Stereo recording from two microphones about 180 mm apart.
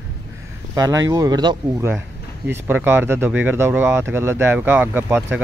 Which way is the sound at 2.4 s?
10° right (ahead or behind).